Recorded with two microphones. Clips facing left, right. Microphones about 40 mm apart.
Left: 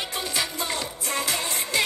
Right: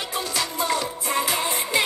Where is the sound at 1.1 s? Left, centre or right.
Centre.